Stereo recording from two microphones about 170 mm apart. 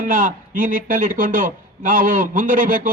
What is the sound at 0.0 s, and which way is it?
A man's voice, 55° right (ahead or behind).